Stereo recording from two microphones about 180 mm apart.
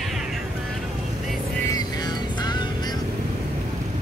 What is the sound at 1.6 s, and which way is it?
Music, 20° left (ahead or behind).